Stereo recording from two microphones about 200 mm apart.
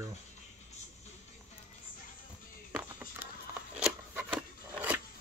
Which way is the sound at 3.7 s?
5° right (ahead or behind).